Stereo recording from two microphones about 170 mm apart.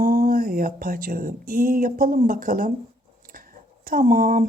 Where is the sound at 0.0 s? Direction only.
55° right (ahead or behind).